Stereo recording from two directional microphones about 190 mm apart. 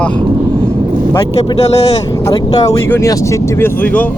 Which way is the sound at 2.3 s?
20° left (ahead or behind).